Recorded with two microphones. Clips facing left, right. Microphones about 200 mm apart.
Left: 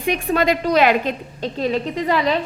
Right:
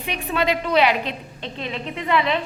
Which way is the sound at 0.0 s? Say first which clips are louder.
Left 5 dB; 45° left (ahead or behind).